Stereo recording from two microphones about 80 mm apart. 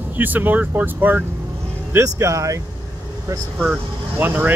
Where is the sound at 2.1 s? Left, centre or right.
Right.